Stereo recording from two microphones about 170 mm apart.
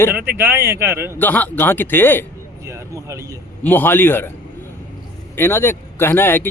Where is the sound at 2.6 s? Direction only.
15° right (ahead or behind).